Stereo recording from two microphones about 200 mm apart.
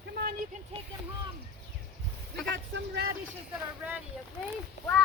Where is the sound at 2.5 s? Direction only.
60° right (ahead or behind).